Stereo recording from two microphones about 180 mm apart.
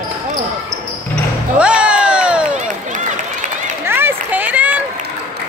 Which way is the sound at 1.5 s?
5° right (ahead or behind).